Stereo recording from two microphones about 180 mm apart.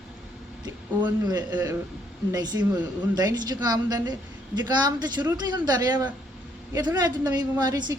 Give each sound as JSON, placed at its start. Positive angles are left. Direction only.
{"t": 0.6, "sound": "a woman's voice", "side_deg": -20}